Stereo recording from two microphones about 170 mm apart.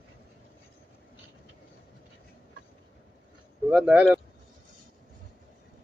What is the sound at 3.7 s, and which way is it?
Speech, 5° right (ahead or behind).